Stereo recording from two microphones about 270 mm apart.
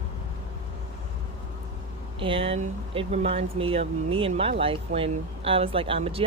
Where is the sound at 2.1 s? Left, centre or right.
Centre.